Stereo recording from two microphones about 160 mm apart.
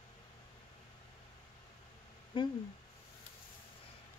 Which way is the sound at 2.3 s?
30° left (ahead or behind).